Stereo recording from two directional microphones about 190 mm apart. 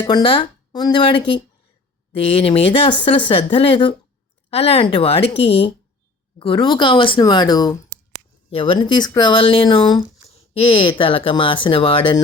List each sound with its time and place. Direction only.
0.0 s speech: 25° left (ahead or behind)